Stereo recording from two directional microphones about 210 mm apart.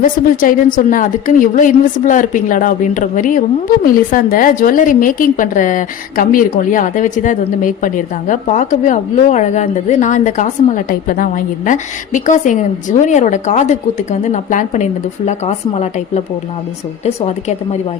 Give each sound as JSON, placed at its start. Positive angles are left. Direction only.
{"t": 0.0, "sound": "a woman's voice", "side_deg": 40}